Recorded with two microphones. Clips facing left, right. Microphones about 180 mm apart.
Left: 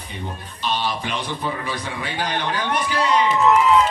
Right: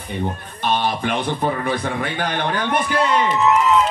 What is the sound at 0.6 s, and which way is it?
Speech, 55° right (ahead or behind).